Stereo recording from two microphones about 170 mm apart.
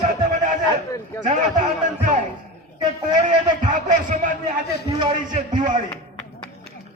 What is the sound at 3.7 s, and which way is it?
Speech, 45° right (ahead or behind).